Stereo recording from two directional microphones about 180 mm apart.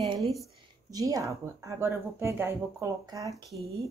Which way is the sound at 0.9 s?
20° right (ahead or behind).